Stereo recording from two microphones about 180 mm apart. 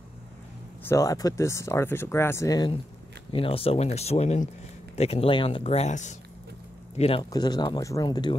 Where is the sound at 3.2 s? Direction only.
30° left (ahead or behind).